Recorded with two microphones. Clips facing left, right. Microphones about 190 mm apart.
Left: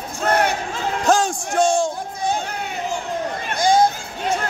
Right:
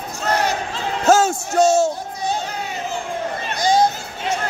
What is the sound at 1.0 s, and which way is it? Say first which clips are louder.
Bellow: right 4 dB; 5° right (ahead or behind).